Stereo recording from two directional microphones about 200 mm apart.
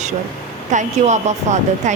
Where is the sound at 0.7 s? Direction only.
35° right (ahead or behind).